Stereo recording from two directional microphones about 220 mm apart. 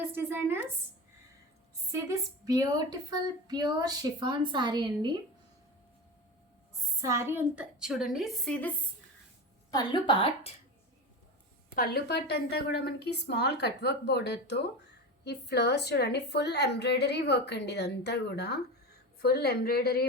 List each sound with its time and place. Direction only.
0.0 s a sound: 10° right (ahead or behind)
1.9 s a woman's voice: 15° right (ahead or behind)
7.0 s a woman's voice: 10° right (ahead or behind)
9.7 s speech: 20° left (ahead or behind)
11.7 s a woman's voice: 45° left (ahead or behind)